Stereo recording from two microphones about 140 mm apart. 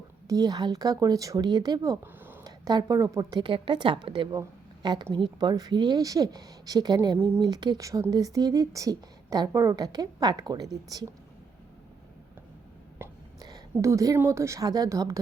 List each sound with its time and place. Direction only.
0.3 s a woman's voice: 25° right (ahead or behind)
13.0 s a sound: 15° right (ahead or behind)
13.4 s a woman's voice: 25° right (ahead or behind)